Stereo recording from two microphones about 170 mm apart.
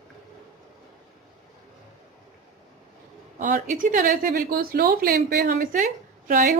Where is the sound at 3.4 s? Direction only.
50° right (ahead or behind).